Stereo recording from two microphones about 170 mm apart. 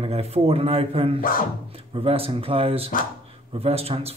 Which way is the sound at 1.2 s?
55° left (ahead or behind).